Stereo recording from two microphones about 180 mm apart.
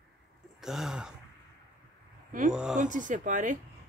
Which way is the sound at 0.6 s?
Centre (ahead or behind).